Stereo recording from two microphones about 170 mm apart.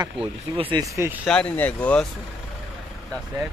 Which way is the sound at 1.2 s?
5° left (ahead or behind).